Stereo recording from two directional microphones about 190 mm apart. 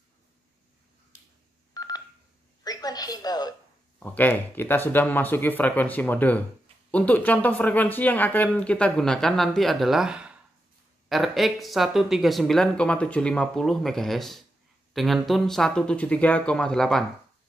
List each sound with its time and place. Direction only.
1.7 s telephone dialing: 20° left (ahead or behind)
2.6 s a sound: 20° left (ahead or behind)
4.0 s speech: 10° left (ahead or behind)